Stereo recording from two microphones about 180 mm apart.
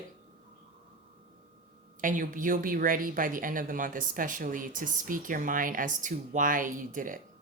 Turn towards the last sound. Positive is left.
turn(degrees=-50)  # may be behind; listen again after turning